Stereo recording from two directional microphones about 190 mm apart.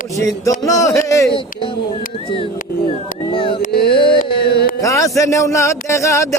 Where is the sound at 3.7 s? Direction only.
55° left (ahead or behind).